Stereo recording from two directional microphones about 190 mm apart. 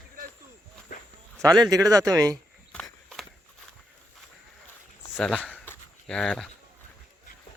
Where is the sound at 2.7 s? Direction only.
Centre (ahead or behind).